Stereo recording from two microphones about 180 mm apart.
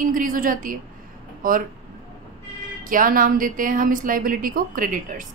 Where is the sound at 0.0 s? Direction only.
50° right (ahead or behind).